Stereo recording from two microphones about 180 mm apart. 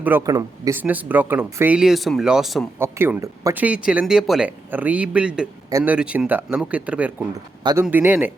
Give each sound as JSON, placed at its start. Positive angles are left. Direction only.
{"t": 0.0, "sound": "speech", "side_deg": -15}
{"t": 2.7, "sound": "speech", "side_deg": -10}
{"t": 7.6, "sound": "speech", "side_deg": -25}
{"t": 7.9, "sound": "speech", "side_deg": -10}